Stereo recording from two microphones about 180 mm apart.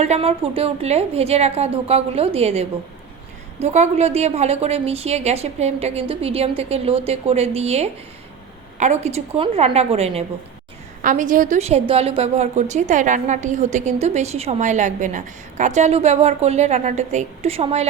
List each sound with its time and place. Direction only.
0.0 s a woman's voice: 35° right (ahead or behind)
11.0 s a woman's voice: 45° right (ahead or behind)